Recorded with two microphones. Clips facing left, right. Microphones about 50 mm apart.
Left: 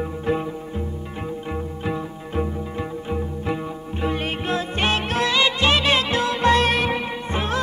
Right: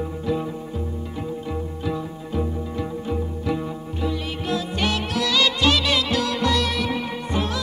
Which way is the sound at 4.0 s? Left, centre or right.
Left.